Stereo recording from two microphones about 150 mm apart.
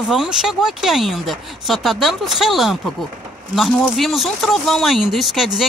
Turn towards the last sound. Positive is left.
turn(degrees=0)  # may be behind; listen again after turning